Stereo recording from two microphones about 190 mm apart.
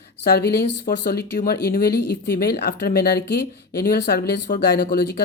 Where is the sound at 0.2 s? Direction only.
55° left (ahead or behind).